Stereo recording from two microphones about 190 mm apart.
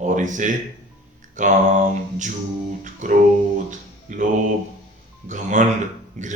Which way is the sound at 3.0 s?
40° right (ahead or behind).